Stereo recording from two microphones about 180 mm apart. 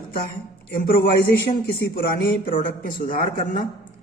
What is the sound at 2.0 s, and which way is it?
A man's voice, 55° left (ahead or behind).